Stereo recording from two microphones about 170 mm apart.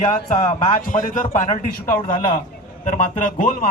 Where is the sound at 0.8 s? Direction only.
55° left (ahead or behind).